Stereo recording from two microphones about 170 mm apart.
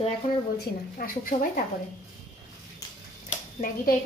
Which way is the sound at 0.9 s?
55° left (ahead or behind).